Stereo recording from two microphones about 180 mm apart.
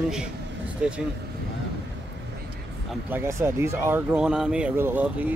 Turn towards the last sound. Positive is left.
turn(degrees=-10)  # may be behind; listen again after turning